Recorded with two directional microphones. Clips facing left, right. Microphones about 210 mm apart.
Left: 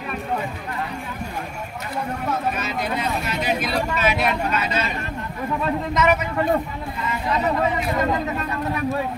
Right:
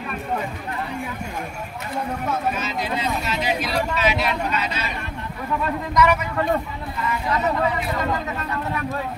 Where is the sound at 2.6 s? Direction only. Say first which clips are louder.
Left 1 dB; 60° left (ahead or behind).